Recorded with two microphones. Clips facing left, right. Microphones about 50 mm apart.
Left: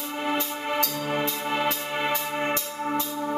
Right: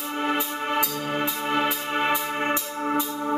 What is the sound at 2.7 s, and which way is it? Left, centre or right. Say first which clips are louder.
Music: right 2 dB; right.